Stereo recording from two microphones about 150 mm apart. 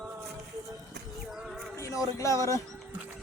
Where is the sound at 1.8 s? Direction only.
20° left (ahead or behind).